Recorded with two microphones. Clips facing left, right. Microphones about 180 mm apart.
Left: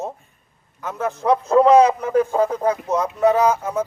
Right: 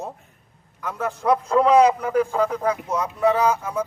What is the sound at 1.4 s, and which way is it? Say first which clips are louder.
Speech: left 3 dB; 30° left (ahead or behind).